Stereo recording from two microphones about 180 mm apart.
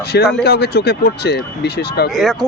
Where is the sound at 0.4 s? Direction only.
65° left (ahead or behind).